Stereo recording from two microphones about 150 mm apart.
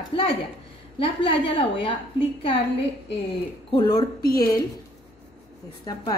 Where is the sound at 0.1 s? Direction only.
35° left (ahead or behind).